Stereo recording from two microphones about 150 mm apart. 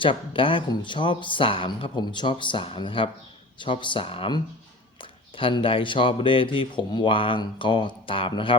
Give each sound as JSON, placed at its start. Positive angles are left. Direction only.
{"t": 0.0, "sound": "speech", "side_deg": 35}
{"t": 5.4, "sound": "speech", "side_deg": 35}